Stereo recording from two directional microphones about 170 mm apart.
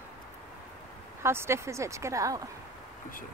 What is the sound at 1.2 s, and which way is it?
Speech, 15° right (ahead or behind).